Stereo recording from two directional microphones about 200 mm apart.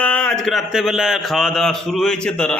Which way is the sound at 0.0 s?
5° left (ahead or behind).